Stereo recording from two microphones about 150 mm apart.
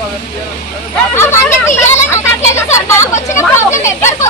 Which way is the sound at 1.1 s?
15° left (ahead or behind).